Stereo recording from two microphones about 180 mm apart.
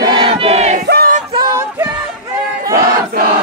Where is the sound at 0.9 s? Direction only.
55° right (ahead or behind).